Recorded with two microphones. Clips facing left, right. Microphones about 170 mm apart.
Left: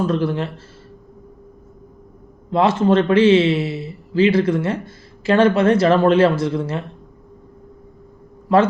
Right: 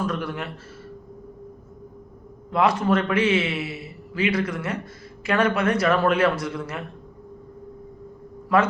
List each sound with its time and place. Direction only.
0.1 s a man's voice: 30° left (ahead or behind)
2.5 s a man's voice: 25° left (ahead or behind)